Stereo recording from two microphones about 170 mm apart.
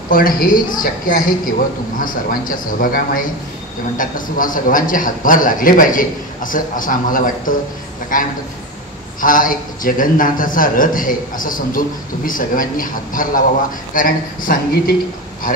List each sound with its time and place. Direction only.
0.1 s a man's voice: 55° left (ahead or behind)